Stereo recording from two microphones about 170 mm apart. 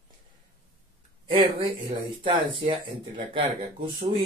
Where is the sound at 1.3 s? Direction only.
30° right (ahead or behind).